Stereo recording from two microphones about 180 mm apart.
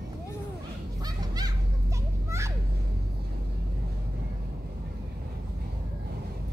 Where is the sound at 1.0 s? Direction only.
20° right (ahead or behind).